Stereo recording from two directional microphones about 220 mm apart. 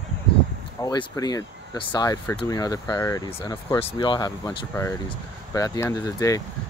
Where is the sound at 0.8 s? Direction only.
15° left (ahead or behind).